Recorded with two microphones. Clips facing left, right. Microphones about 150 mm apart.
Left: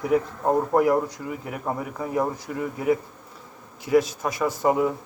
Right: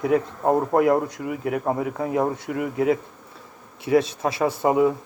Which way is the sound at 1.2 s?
85° right.